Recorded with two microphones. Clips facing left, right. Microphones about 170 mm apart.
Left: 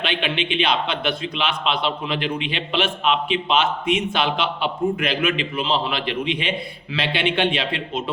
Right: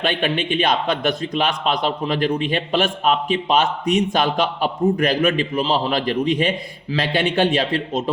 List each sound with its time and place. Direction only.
0.0 s a man's voice: 45° right (ahead or behind)